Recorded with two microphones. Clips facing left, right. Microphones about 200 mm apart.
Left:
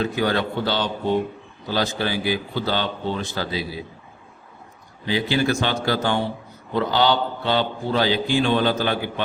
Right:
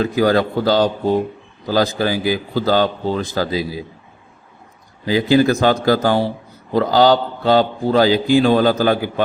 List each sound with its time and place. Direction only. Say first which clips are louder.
0.2 s a man's voice: right 7 dB; 40° right (ahead or behind)
5.0 s a man's voice: right 7 dB; 40° right (ahead or behind)